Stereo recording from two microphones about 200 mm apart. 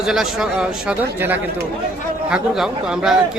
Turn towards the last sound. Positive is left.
turn(degrees=0)  # may be behind; listen again after turning